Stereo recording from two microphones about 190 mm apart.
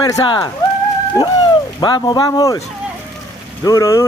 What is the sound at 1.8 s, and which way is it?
Speech, 20° left (ahead or behind).